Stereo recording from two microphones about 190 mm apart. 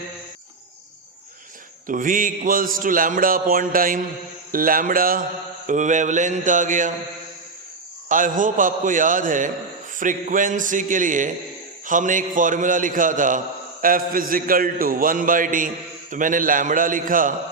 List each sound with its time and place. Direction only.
1.9 s a man's voice: 45° right (ahead or behind)
5.6 s mantra: 40° right (ahead or behind)
8.1 s a man's voice: 45° right (ahead or behind)